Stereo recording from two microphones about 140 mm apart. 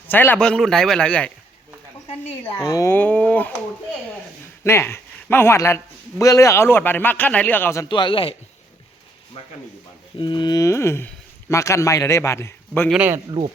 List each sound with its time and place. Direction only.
0.1 s a man's voice: 15° left (ahead or behind)
2.4 s a man's voice: 20° left (ahead or behind)
4.6 s a man's voice: 20° left (ahead or behind)
7.9 s a man's voice: 35° left (ahead or behind)
10.2 s speech: 35° left (ahead or behind); by 12.9 s 15° left (ahead or behind)
12.9 s speech: 10° right (ahead or behind)
13.4 s speech: 30° right (ahead or behind)